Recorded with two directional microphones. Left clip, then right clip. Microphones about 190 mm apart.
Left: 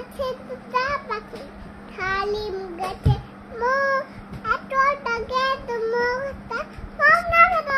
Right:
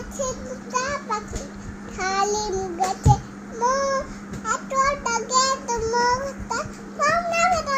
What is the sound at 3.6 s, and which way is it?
Babbling, 40° left (ahead or behind).